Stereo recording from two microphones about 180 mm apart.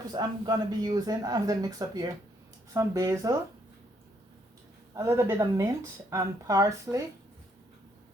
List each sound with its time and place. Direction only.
0.1 s a man's voice: 25° right (ahead or behind)
4.9 s a man's voice: 15° right (ahead or behind)